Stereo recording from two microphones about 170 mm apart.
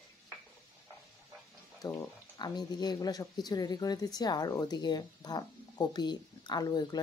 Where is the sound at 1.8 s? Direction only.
20° left (ahead or behind).